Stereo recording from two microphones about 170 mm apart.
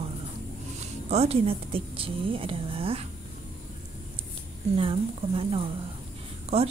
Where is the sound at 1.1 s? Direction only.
35° right (ahead or behind).